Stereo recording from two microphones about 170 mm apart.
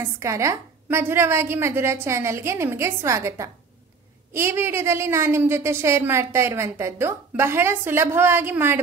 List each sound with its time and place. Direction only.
0.0 s a woman's voice: 15° right (ahead or behind)